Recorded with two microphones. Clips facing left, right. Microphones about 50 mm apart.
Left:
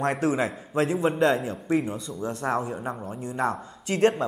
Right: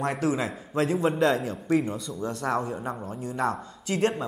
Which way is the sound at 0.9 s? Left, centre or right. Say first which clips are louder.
Even; centre.